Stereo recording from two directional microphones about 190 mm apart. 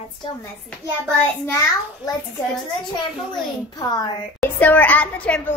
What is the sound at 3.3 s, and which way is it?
Speech, 20° left (ahead or behind).